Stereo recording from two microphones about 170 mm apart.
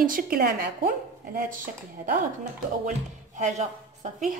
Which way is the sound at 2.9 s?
45° right (ahead or behind).